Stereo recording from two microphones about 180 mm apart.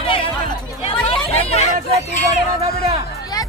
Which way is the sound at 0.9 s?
30° left (ahead or behind).